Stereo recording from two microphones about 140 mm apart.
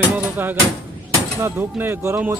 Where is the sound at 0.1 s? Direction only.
15° right (ahead or behind).